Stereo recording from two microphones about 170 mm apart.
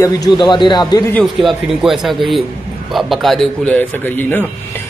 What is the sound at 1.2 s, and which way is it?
A man's voice, centre (ahead or behind).